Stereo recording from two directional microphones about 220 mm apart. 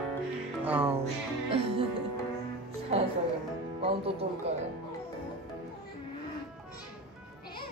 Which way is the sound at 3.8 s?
25° right (ahead or behind).